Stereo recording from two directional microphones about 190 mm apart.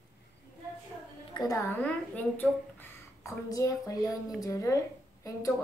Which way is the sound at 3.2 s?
15° left (ahead or behind).